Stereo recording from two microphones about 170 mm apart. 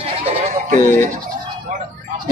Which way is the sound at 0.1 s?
35° right (ahead or behind).